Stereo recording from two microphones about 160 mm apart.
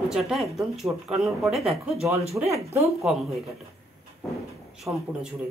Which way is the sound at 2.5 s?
40° right (ahead or behind).